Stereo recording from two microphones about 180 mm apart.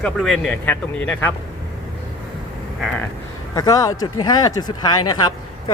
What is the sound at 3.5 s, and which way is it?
Speech, 20° left (ahead or behind).